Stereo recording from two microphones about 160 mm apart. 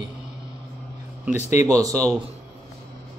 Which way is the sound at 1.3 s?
45° left (ahead or behind).